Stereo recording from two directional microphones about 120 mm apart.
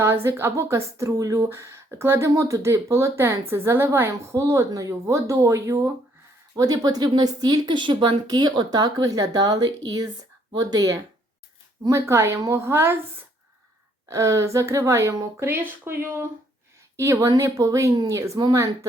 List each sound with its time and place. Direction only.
0.0 s speech: 20° right (ahead or behind)